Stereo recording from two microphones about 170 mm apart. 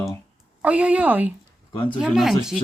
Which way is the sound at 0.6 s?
10° right (ahead or behind).